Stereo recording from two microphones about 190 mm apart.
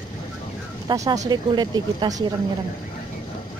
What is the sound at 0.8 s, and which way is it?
A woman's voice, 15° right (ahead or behind).